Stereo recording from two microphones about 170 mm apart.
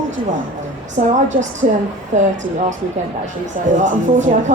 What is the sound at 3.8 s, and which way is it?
Speech, 45° right (ahead or behind).